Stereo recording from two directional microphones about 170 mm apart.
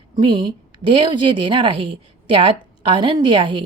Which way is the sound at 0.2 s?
25° right (ahead or behind).